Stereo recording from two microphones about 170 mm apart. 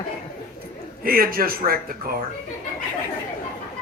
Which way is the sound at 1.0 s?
60° right (ahead or behind).